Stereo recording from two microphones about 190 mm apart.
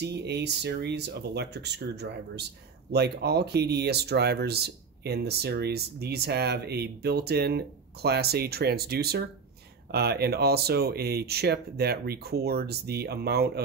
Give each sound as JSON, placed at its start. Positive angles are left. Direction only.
{"t": 0.0, "sound": "speech", "side_deg": -60}